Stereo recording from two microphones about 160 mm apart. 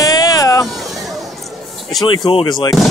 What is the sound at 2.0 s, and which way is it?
Speech, 30° left (ahead or behind).